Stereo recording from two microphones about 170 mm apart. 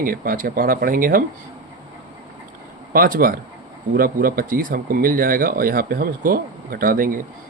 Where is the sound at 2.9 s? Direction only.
60° right (ahead or behind).